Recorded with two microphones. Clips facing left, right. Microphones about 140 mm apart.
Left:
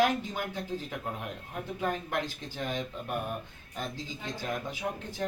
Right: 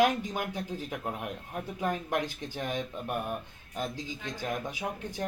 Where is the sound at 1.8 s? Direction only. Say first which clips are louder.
Right 1 dB; 15° right (ahead or behind).